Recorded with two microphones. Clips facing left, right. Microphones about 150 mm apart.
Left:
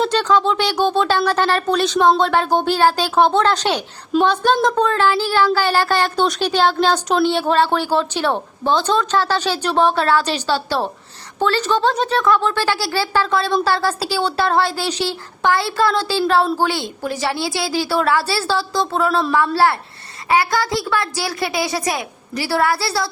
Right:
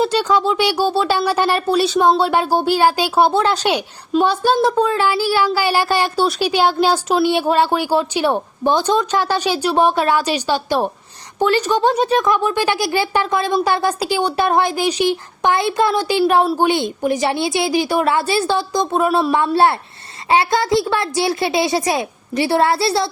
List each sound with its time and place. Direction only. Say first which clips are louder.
0.0 s a woman's voice: even; 10° right (ahead or behind)